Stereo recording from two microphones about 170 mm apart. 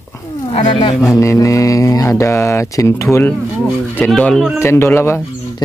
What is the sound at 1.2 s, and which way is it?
Speech, 20° left (ahead or behind).